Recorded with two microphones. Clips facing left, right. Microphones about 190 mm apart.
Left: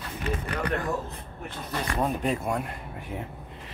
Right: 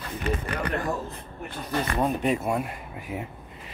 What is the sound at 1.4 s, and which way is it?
Speech, 5° right (ahead or behind).